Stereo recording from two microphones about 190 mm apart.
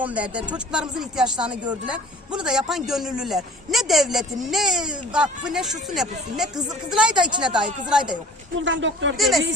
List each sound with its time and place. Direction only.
0.0 s speech: 5° right (ahead or behind)
8.5 s speech: 75° right (ahead or behind)
9.1 s speech: centre (ahead or behind)